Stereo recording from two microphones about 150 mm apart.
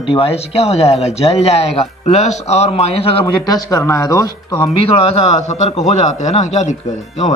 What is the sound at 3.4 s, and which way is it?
Speech, 20° left (ahead or behind).